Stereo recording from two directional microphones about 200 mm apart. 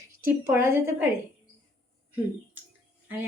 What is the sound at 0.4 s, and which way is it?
Speech, 10° right (ahead or behind).